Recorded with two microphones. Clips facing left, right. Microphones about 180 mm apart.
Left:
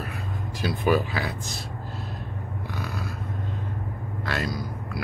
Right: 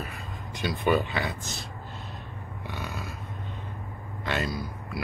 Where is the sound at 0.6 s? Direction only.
5° left (ahead or behind).